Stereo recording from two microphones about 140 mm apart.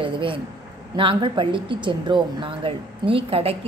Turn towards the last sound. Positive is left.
turn(degrees=-45)  # may be behind; listen again after turning